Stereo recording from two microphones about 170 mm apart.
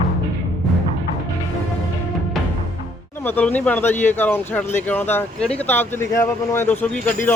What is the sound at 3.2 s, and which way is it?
Speech, 10° left (ahead or behind).